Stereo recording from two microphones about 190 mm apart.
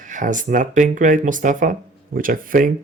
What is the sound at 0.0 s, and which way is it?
Speech, 40° right (ahead or behind).